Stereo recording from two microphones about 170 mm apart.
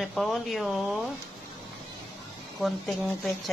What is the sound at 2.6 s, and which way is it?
Speech, centre (ahead or behind).